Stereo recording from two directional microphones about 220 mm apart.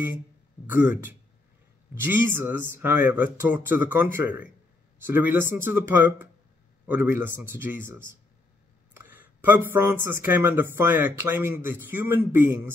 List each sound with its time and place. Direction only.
0.7 s speech: 10° right (ahead or behind)